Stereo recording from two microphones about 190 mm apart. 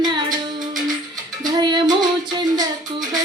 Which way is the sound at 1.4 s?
20° right (ahead or behind).